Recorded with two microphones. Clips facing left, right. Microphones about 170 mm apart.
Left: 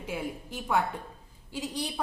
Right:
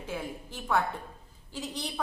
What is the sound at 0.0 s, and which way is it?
A woman's voice, 15° left (ahead or behind).